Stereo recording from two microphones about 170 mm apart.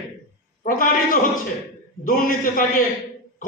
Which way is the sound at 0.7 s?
55° left (ahead or behind).